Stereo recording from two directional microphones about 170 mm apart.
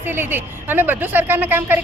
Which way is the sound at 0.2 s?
10° right (ahead or behind).